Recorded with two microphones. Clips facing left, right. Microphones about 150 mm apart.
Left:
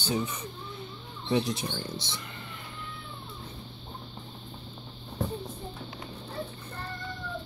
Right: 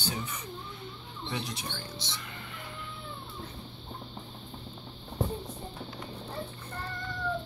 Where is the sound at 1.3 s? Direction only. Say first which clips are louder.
Left 10 dB; 30° left (ahead or behind).